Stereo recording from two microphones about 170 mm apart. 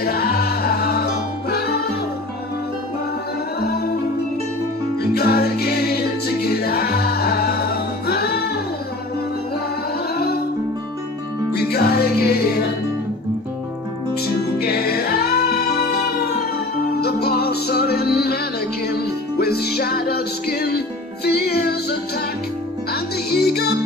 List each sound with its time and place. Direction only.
0.0 s music: 65° left (ahead or behind)
3.6 s music: 65° left (ahead or behind)
5.1 s music: 70° left (ahead or behind)
10.1 s music: 65° left (ahead or behind)
11.5 s music: 70° left (ahead or behind)
14.6 s music: 65° left (ahead or behind)
23.3 s music: 70° left (ahead or behind)